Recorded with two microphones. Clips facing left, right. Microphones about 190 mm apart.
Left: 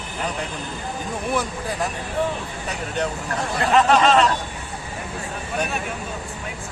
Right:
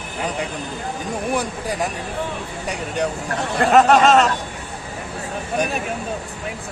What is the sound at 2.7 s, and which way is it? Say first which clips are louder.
Speech: right 3 dB; 10° right (ahead or behind).